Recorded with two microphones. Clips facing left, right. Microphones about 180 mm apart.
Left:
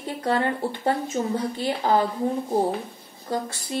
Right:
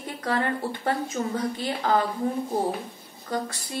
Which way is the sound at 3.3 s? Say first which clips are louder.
Left 2 dB; 25° left (ahead or behind).